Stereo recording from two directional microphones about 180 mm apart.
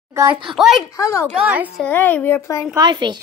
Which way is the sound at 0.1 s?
15° right (ahead or behind).